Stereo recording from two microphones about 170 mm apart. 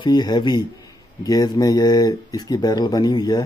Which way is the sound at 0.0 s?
25° left (ahead or behind).